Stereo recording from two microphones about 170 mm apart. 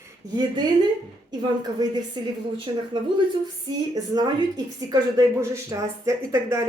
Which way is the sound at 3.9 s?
25° right (ahead or behind).